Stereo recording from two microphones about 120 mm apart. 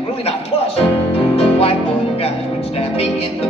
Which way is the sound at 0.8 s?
55° left (ahead or behind).